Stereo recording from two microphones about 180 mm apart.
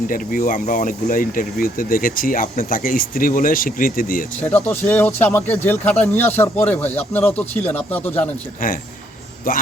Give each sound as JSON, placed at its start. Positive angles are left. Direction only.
{"t": 0.1, "sound": "speech", "side_deg": 50}
{"t": 4.4, "sound": "speech", "side_deg": 10}